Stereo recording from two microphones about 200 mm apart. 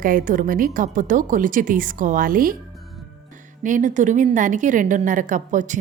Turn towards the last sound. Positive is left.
turn(degrees=-40)  # may be behind; listen again after turning